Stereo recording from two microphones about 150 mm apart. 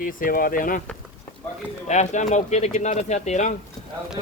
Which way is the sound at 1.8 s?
50° left (ahead or behind).